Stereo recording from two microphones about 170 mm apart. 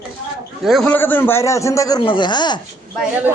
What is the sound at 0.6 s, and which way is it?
Speech, centre (ahead or behind).